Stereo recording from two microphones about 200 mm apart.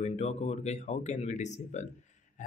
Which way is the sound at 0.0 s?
35° left (ahead or behind).